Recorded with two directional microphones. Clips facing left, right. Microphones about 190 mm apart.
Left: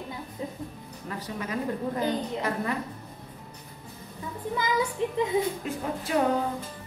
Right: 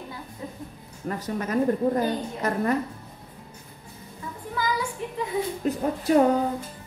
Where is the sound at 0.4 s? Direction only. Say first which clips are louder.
Left 2 dB; 20° left (ahead or behind).